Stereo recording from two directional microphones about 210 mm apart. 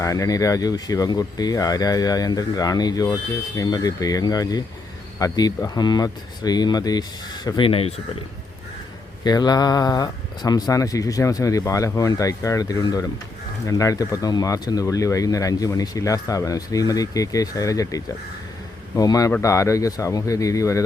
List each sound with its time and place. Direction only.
0.0 s speech: 15° left (ahead or behind)
9.2 s speech: 20° left (ahead or behind)